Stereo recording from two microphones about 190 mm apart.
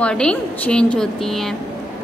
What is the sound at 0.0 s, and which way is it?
A woman's voice, 5° left (ahead or behind).